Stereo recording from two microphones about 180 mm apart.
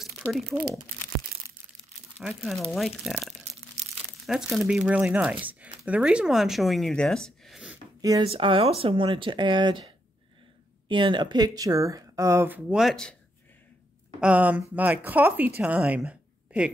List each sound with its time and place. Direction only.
0.2 s speech: centre (ahead or behind)
2.1 s speech: centre (ahead or behind)
8.0 s speech: 20° right (ahead or behind)
8.3 s speech: 30° right (ahead or behind); by 13.1 s centre (ahead or behind)
14.2 s speech: 10° right (ahead or behind)